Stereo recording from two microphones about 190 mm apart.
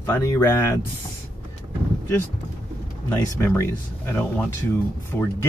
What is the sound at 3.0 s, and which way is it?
Speech, 15° left (ahead or behind).